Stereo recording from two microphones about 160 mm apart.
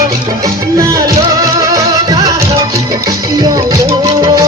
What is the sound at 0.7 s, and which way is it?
Music, 20° right (ahead or behind).